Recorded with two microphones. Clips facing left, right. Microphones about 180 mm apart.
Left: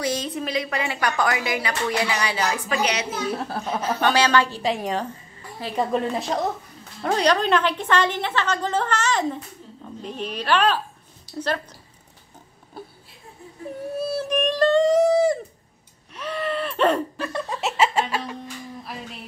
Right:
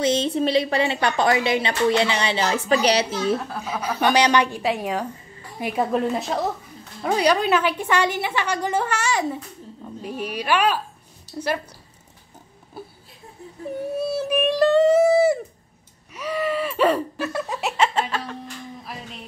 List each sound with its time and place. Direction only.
0.0 s a woman's voice: 25° right (ahead or behind)
3.3 s speech: 30° left (ahead or behind)
3.6 s a woman's voice: 10° right (ahead or behind)
4.6 s a woman's voice: 5° right (ahead or behind)
5.9 s a woman's voice: centre (ahead or behind)
12.8 s a sound: 5° right (ahead or behind)
13.9 s a sound: centre (ahead or behind)
16.1 s laughter: 5° right (ahead or behind)